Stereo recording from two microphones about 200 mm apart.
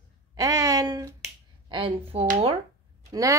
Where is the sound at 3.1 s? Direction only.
15° right (ahead or behind).